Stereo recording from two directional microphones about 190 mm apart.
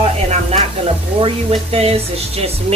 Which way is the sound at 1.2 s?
30° right (ahead or behind).